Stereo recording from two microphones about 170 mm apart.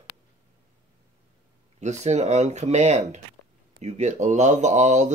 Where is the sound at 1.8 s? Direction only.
45° right (ahead or behind).